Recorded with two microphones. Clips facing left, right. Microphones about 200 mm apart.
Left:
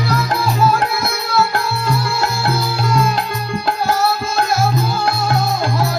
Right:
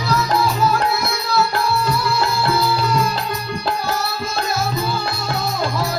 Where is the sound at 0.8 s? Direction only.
50° left (ahead or behind).